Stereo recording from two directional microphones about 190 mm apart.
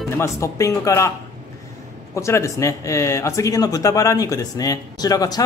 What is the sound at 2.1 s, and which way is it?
Speech, 15° left (ahead or behind).